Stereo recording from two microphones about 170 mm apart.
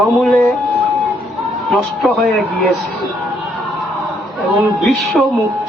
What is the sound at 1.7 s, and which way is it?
A man's voice, centre (ahead or behind).